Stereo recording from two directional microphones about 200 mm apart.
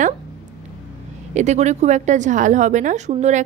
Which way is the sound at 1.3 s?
35° right (ahead or behind).